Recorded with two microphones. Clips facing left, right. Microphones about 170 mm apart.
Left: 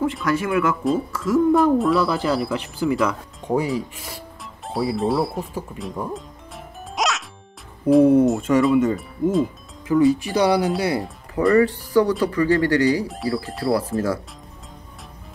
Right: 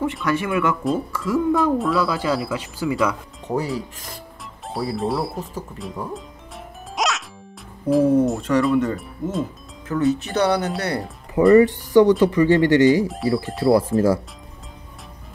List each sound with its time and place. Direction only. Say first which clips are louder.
0.0 s speech: left 1 dB; centre (ahead or behind)
7.0 s music: even; centre (ahead or behind)
8.1 s speech: left 2 dB; 10° left (ahead or behind)
11.5 s speech: right 4 dB; 20° right (ahead or behind)
13.1 s speech: right 3 dB; centre (ahead or behind)
13.7 s speech: right 5 dB; 25° right (ahead or behind)